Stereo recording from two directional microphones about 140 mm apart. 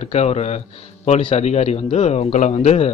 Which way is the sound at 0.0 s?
50° left (ahead or behind).